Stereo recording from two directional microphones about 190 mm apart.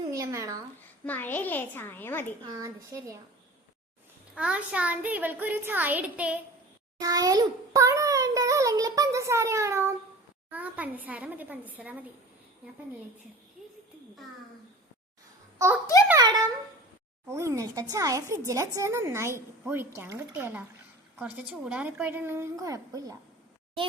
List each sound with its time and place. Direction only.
0.1 s speech: 15° right (ahead or behind)
1.0 s a child's voice: 10° left (ahead or behind)
2.4 s speech: 15° right (ahead or behind)
4.4 s speech: 5° right (ahead or behind)
7.0 s a child's voice: 20° right (ahead or behind)
16.0 s a child's voice: 20° right (ahead or behind)